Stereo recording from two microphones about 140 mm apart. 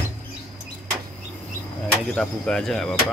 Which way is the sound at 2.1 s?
5° left (ahead or behind).